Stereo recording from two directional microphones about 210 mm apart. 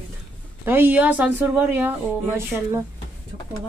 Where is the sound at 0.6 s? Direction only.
10° right (ahead or behind).